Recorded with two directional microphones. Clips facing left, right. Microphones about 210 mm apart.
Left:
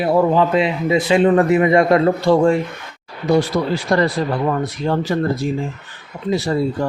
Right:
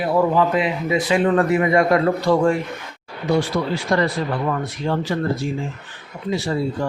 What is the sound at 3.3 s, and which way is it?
Speech, 40° left (ahead or behind).